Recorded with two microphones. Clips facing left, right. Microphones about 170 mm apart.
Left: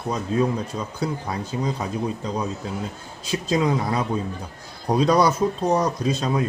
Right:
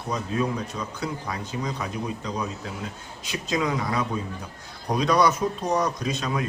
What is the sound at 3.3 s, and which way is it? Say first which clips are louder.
A man's voice: left 5 dB; 30° left (ahead or behind).